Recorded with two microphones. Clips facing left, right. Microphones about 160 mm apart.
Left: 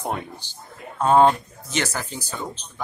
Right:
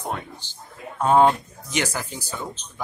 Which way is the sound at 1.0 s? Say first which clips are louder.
Left 1 dB; 10° right (ahead or behind).